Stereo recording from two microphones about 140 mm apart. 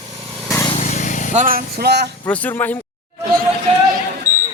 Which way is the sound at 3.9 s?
70° right (ahead or behind).